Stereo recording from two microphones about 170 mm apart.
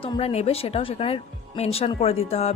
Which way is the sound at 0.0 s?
35° left (ahead or behind).